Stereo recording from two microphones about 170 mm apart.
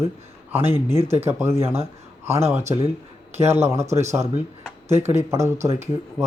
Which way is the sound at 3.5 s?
15° right (ahead or behind).